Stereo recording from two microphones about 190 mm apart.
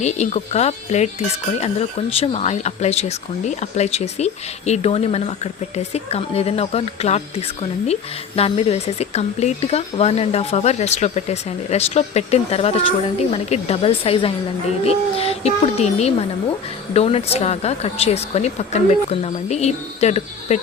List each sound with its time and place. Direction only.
0.0 s speech: 35° left (ahead or behind)